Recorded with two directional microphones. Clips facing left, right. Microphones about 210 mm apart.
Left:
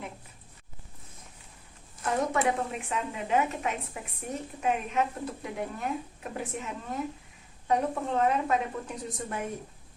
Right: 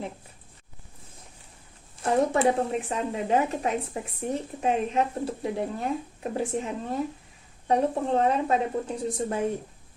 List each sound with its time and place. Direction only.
2.0 s a woman's voice: 30° right (ahead or behind)